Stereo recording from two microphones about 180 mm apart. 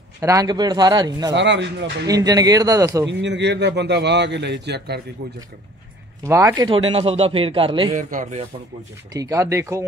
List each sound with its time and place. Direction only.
0.2 s speech: 20° right (ahead or behind)
1.3 s a man's voice: 80° right
2.0 s speech: 20° right (ahead or behind)
3.1 s a man's voice: 75° right (ahead or behind)
6.2 s a man's voice: 15° right (ahead or behind)
8.1 s a man's voice: 40° right (ahead or behind)
9.1 s speech: 20° right (ahead or behind)